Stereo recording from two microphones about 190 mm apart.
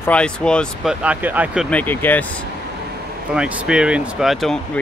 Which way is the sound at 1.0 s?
10° right (ahead or behind).